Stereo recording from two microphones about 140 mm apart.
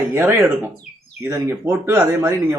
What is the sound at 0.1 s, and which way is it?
Speech, 15° right (ahead or behind).